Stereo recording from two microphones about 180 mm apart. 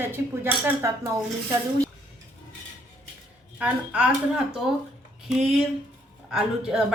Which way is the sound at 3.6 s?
5° right (ahead or behind).